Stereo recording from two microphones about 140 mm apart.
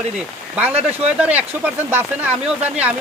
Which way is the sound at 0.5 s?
10° right (ahead or behind).